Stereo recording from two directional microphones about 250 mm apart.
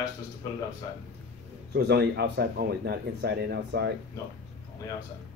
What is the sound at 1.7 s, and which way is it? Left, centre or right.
Speech, right.